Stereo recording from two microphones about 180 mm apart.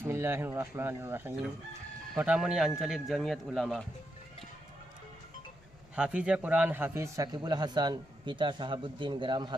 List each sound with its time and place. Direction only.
0.0 s speech: 15° right (ahead or behind)
6.0 s a man's voice: 5° right (ahead or behind); by 9.6 s 25° right (ahead or behind)